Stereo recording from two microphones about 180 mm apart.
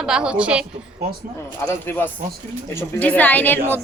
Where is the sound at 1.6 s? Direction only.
10° left (ahead or behind).